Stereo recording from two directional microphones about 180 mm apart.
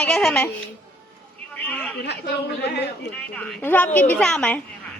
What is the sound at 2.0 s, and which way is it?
Speech, 65° left (ahead or behind).